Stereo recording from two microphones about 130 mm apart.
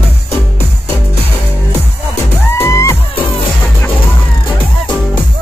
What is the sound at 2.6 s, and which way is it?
Music, 20° left (ahead or behind).